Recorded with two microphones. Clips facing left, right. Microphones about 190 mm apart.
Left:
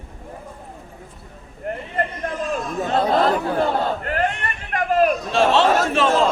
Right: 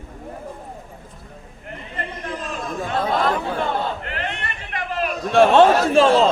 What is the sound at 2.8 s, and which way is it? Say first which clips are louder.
Chatter: left 3 dB; 30° left (ahead or behind).